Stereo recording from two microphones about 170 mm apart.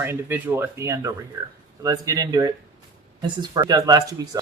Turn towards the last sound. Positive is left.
turn(degrees=-20)  # may be behind; listen again after turning